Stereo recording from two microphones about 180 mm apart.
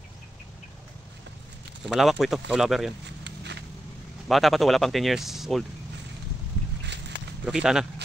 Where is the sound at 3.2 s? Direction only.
70° right (ahead or behind).